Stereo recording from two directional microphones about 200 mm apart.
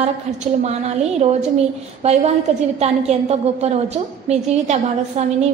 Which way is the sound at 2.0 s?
30° right (ahead or behind).